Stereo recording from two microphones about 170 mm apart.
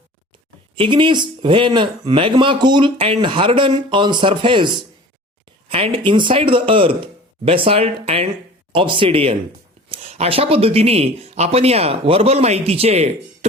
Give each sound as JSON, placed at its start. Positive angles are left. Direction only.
{"t": 0.8, "sound": "speech", "side_deg": -30}